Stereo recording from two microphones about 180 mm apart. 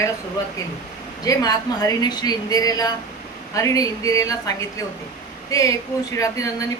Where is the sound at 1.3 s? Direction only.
20° left (ahead or behind).